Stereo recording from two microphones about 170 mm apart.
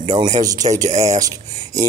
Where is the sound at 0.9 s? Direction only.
40° right (ahead or behind).